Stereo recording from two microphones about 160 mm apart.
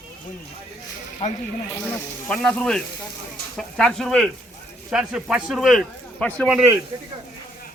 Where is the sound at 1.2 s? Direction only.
45° left (ahead or behind).